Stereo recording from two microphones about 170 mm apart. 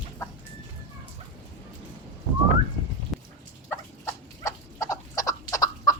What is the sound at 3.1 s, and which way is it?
Fowl, centre (ahead or behind).